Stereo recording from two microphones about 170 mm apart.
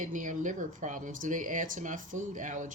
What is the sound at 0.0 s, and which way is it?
Speech, 50° right (ahead or behind).